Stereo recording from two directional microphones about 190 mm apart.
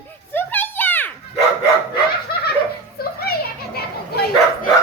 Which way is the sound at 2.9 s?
55° left (ahead or behind).